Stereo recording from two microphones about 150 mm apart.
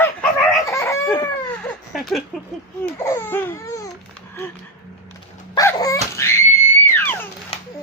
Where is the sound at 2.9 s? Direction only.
20° left (ahead or behind).